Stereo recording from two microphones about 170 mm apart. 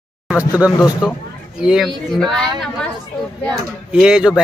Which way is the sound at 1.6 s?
5° right (ahead or behind).